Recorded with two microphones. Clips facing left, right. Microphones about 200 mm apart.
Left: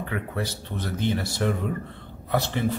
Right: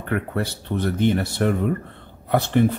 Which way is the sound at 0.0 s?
60° right (ahead or behind).